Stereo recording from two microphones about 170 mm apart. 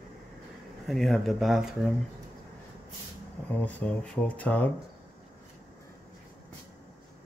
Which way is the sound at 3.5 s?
10° left (ahead or behind).